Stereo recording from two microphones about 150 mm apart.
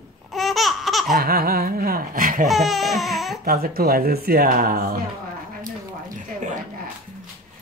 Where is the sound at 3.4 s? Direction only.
85° right.